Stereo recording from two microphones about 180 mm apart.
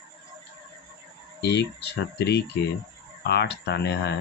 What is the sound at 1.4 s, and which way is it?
Speech, 70° left (ahead or behind).